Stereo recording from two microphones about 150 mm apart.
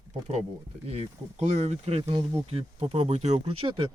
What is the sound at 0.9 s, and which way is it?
Speech, 45° right (ahead or behind).